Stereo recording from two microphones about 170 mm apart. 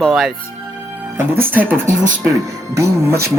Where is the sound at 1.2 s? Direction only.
10° right (ahead or behind).